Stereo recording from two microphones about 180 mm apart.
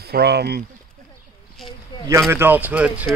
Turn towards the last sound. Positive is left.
turn(degrees=-10)  # may be behind; listen again after turning